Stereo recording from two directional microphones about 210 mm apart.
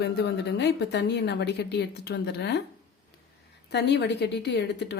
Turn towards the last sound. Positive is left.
turn(degrees=55)  # may be behind; listen again after turning